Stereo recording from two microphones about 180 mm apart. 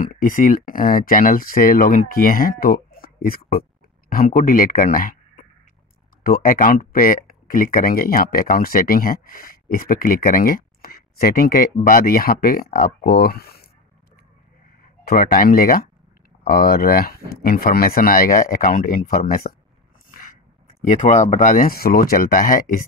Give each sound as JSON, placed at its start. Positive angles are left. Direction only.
{"t": 0.0, "sound": "speech", "side_deg": 50}
{"t": 15.0, "sound": "speech", "side_deg": 50}
{"t": 20.9, "sound": "speech", "side_deg": 40}